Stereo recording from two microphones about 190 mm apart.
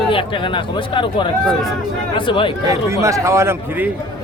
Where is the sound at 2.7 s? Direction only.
15° right (ahead or behind).